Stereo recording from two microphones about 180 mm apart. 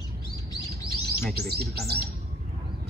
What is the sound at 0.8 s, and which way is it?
Bird, 60° right (ahead or behind).